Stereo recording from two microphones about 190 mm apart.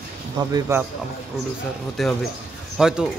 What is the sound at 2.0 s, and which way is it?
Speech, centre (ahead or behind).